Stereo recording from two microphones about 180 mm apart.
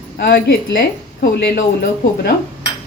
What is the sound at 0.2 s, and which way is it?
A woman's voice, 70° left (ahead or behind).